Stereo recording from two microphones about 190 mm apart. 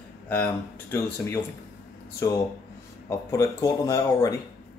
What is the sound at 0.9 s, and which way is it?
Speech, 10° left (ahead or behind).